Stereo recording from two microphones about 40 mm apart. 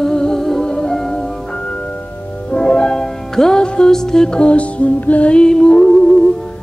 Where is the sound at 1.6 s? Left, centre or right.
Left.